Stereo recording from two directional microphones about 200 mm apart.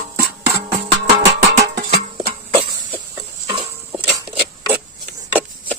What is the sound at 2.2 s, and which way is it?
Music, 25° right (ahead or behind).